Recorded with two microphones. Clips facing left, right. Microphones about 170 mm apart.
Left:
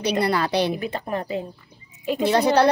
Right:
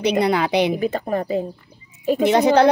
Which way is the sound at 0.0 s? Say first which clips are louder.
Right 4 dB; 15° right (ahead or behind).